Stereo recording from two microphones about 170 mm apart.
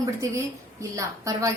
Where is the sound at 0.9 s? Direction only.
20° right (ahead or behind).